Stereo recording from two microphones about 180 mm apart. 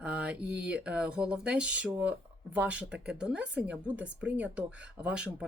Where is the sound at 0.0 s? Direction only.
5° right (ahead or behind).